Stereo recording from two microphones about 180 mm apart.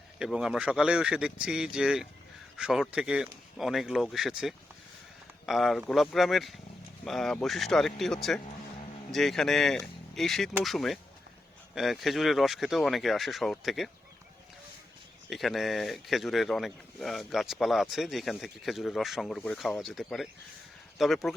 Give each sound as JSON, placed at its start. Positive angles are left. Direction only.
{"t": 0.2, "sound": "speech", "side_deg": -5}
{"t": 15.3, "sound": "speech", "side_deg": 0}